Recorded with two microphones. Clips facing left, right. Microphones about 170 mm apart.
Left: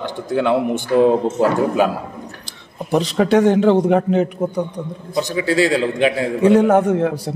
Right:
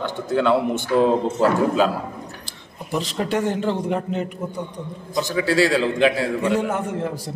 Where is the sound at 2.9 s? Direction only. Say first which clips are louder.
Left 8 dB; 75° left (ahead or behind).